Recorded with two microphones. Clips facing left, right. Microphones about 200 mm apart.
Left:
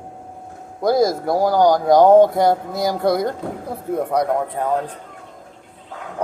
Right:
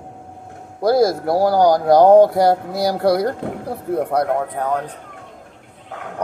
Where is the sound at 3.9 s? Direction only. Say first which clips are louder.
Right 1 dB; 5° right (ahead or behind).